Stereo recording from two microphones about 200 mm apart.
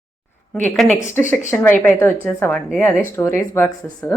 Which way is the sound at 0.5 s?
5° left (ahead or behind).